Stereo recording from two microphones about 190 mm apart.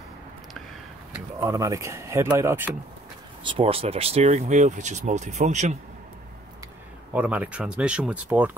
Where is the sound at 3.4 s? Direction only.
30° right (ahead or behind).